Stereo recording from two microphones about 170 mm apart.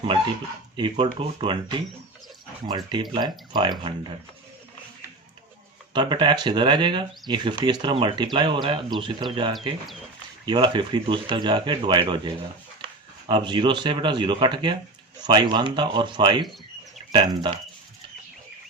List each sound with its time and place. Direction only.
1.0 s speech: 30° right (ahead or behind)
2.6 s speech: 25° right (ahead or behind)
5.9 s speech: 25° right (ahead or behind)